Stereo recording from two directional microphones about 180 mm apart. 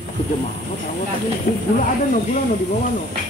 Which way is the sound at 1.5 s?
55° left (ahead or behind).